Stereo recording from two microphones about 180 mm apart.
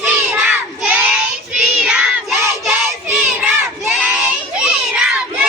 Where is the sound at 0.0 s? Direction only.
15° right (ahead or behind).